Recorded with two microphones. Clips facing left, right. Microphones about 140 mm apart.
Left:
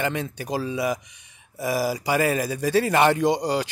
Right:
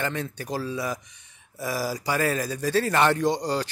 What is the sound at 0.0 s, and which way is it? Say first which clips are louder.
Speech: left 3 dB; 15° left (ahead or behind).